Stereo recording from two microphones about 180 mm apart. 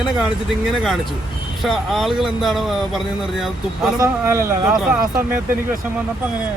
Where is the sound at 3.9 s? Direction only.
15° right (ahead or behind).